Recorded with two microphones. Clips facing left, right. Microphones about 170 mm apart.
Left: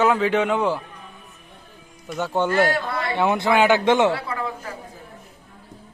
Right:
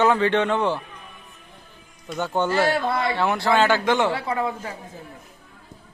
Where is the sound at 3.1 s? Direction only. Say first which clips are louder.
Left 4 dB; 20° left (ahead or behind).